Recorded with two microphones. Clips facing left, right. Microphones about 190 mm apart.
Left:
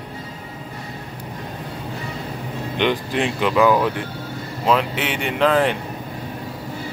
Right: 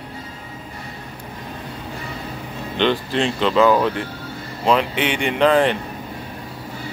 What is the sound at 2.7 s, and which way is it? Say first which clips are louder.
Speech: right 1 dB; 15° left (ahead or behind).